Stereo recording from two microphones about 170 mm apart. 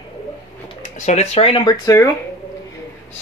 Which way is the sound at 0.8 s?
45° left (ahead or behind).